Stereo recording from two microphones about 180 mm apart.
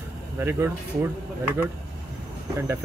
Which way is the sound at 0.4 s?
15° right (ahead or behind).